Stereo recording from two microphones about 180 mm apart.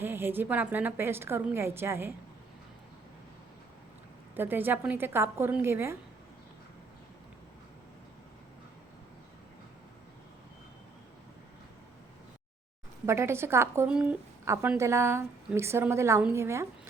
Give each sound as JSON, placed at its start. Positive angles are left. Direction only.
{"t": 0.0, "sound": "a woman's voice", "side_deg": -10}
{"t": 4.4, "sound": "a woman's voice", "side_deg": -10}
{"t": 13.1, "sound": "a woman's voice", "side_deg": -15}
{"t": 14.4, "sound": "a woman's voice", "side_deg": -15}